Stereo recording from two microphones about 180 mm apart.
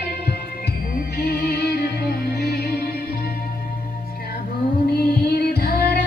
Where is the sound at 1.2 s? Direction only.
60° left (ahead or behind).